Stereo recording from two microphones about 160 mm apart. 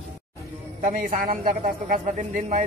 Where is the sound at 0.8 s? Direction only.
55° right (ahead or behind).